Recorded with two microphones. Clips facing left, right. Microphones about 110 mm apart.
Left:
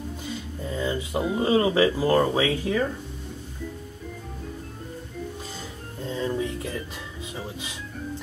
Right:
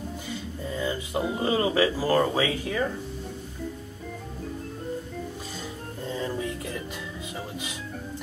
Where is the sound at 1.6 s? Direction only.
10° left (ahead or behind).